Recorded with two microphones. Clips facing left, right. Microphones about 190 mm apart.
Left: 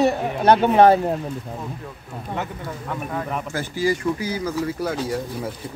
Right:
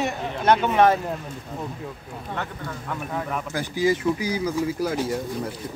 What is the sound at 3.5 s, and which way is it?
Speech, 15° right (ahead or behind).